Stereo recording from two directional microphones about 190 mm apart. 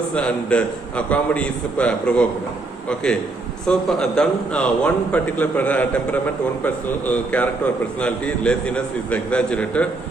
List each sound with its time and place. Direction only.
0.1 s a man's voice: 5° left (ahead or behind)